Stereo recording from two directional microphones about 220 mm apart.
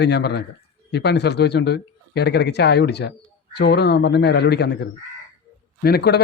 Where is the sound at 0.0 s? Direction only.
50° left (ahead or behind).